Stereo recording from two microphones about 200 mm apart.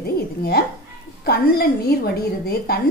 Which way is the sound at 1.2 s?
50° left (ahead or behind).